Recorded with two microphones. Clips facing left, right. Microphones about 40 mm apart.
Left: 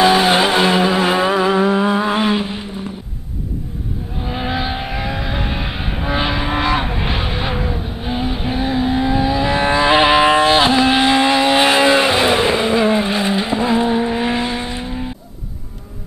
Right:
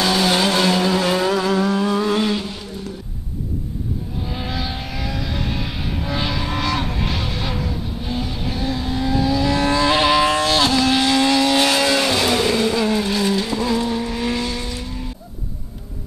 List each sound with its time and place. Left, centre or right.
0.0 s vehicle: left
4.2 s vehicle: left